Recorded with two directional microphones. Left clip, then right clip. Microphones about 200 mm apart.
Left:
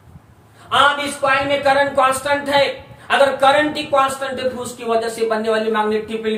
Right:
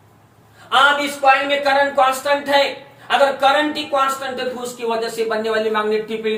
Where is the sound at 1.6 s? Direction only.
20° left (ahead or behind).